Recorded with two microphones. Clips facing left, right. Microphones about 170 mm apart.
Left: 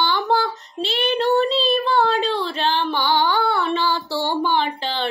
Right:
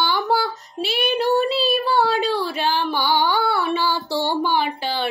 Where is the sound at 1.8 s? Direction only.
20° left (ahead or behind).